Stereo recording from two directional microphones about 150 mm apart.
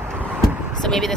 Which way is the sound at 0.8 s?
Centre (ahead or behind).